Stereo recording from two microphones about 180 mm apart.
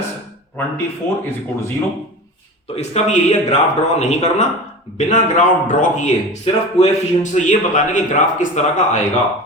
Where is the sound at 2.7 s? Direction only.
35° left (ahead or behind).